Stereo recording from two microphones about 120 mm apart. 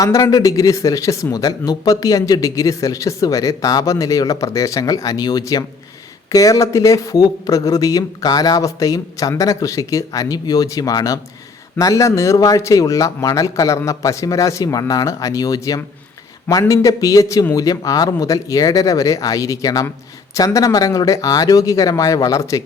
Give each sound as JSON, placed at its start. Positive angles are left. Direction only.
{"t": 0.0, "sound": "speech", "side_deg": 30}